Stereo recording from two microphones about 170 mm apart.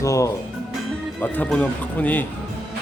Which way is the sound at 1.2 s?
10° left (ahead or behind).